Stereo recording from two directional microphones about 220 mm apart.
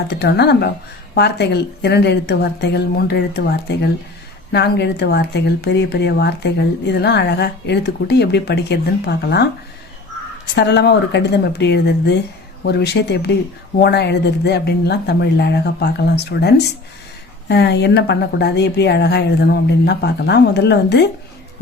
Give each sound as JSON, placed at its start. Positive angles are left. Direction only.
{"t": 0.1, "sound": "speech", "side_deg": 50}
{"t": 10.5, "sound": "speech", "side_deg": 50}